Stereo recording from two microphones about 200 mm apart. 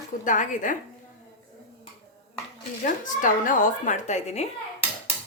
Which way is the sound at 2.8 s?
40° left (ahead or behind).